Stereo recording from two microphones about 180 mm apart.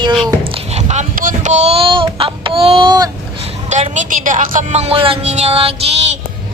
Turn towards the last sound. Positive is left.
turn(degrees=-35)  # may be behind; listen again after turning